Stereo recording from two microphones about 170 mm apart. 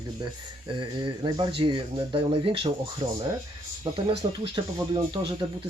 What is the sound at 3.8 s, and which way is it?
Speech, 30° right (ahead or behind).